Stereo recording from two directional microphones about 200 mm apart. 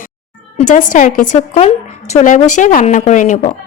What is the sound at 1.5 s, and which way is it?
Speech, 30° left (ahead or behind).